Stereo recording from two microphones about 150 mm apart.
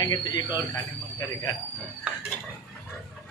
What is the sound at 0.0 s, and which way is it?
Speech, 25° left (ahead or behind).